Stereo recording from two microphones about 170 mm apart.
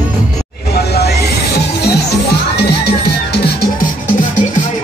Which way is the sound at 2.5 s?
75° left (ahead or behind).